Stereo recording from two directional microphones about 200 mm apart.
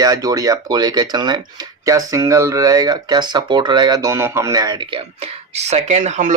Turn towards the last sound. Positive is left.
turn(degrees=-35)  # may be behind; listen again after turning